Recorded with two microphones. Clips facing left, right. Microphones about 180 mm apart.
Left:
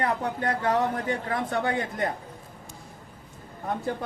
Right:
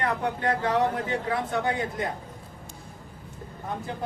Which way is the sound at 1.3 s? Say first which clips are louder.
Right 1 dB; 50° left (ahead or behind).